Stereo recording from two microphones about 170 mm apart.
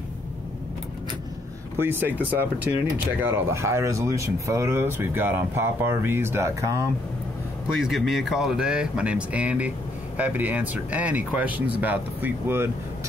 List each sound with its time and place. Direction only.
1.8 s speech: 10° right (ahead or behind)
7.6 s speech: centre (ahead or behind)